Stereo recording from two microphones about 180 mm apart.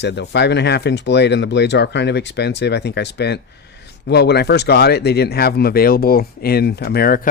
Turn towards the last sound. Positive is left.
turn(degrees=55)  # may be behind; listen again after turning